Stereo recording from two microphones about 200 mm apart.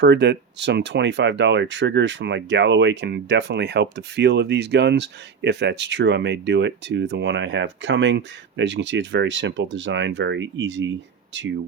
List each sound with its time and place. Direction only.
0.0 s speech: 60° right (ahead or behind)